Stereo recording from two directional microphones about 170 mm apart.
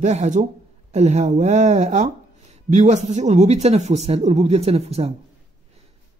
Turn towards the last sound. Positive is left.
turn(degrees=-35)  # may be behind; listen again after turning